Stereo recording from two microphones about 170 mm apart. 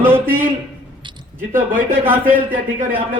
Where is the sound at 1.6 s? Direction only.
50° right (ahead or behind).